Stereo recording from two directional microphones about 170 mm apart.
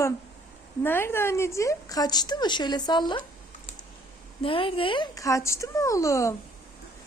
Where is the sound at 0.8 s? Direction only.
10° left (ahead or behind).